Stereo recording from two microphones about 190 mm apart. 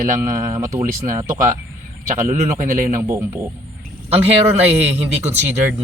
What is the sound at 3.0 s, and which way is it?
Speech, 15° right (ahead or behind).